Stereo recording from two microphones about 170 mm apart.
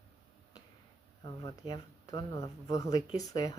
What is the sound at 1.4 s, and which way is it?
Speech, 25° left (ahead or behind).